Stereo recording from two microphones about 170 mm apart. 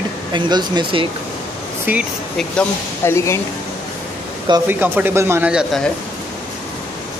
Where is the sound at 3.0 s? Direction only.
15° left (ahead or behind).